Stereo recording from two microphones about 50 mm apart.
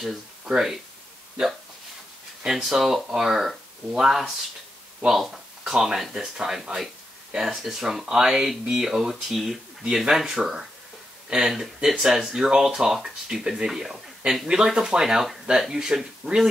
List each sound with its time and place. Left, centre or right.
0.0 s speech: centre
2.4 s speech: centre